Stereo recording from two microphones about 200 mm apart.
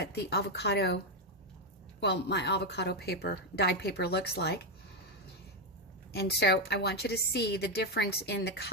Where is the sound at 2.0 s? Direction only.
60° left (ahead or behind).